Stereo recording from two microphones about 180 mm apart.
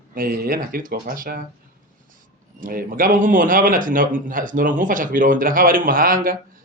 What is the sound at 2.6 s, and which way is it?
A man's voice, 50° right (ahead or behind).